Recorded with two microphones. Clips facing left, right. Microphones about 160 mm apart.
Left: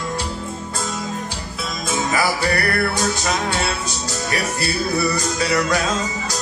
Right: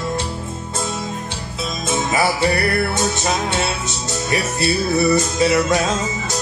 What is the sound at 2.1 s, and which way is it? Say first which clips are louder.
Music: right 2 dB; 25° right (ahead or behind).